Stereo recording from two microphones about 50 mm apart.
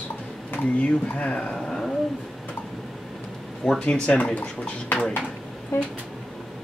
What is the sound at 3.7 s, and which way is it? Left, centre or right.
Speech, centre.